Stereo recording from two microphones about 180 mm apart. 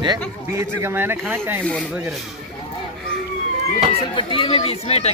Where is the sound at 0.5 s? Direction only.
15° right (ahead or behind).